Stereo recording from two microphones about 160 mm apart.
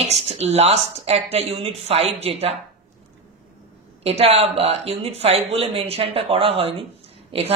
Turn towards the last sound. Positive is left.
turn(degrees=-35)  # may be behind; listen again after turning